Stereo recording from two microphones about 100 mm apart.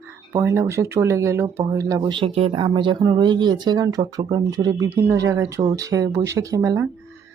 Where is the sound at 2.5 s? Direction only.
55° right (ahead or behind).